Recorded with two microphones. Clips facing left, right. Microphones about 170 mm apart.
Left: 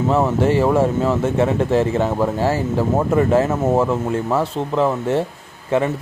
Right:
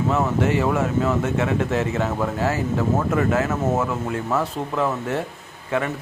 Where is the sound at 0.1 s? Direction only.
30° left (ahead or behind).